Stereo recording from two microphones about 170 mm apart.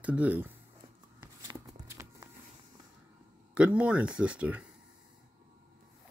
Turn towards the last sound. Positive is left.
turn(degrees=-5)  # may be behind; listen again after turning